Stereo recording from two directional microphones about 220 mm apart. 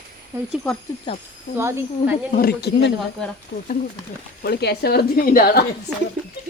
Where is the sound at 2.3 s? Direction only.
45° left (ahead or behind).